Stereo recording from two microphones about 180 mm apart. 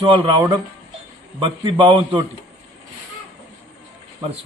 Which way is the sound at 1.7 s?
30° right (ahead or behind).